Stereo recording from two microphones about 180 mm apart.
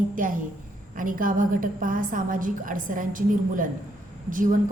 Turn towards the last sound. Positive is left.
turn(degrees=-45)  # may be behind; listen again after turning